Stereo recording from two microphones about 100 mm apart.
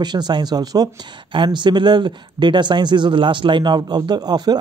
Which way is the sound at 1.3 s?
50° right (ahead or behind).